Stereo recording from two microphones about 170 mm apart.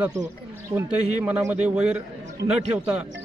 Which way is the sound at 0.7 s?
10° right (ahead or behind).